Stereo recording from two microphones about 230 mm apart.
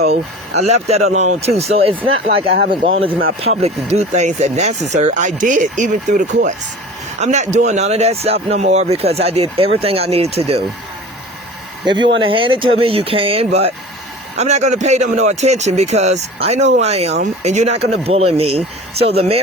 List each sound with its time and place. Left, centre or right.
0.0 s speech: right
1.1 s speech: right
11.9 s speech: centre